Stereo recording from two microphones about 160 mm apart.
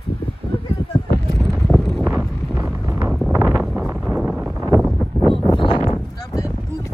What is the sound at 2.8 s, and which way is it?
Wind noise, 15° right (ahead or behind).